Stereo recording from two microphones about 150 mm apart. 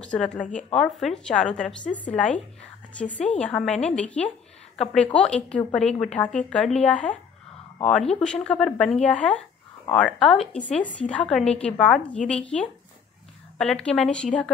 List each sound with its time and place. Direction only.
0.0 s a woman's voice: 5° left (ahead or behind)
8.2 s a woman's voice: 5° left (ahead or behind)